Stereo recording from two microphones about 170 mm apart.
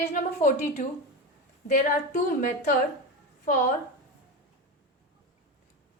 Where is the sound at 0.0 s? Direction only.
50° left (ahead or behind).